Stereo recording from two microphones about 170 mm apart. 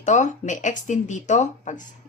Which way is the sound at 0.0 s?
45° left (ahead or behind).